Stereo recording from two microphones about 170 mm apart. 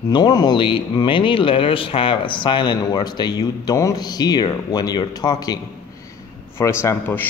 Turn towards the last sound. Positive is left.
turn(degrees=10)  # may be behind; listen again after turning